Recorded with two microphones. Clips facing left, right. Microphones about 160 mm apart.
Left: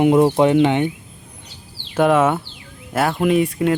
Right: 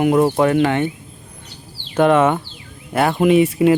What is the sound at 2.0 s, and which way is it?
Speech, 5° left (ahead or behind).